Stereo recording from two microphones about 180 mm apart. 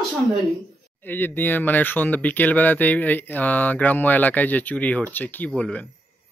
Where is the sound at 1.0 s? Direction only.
10° left (ahead or behind).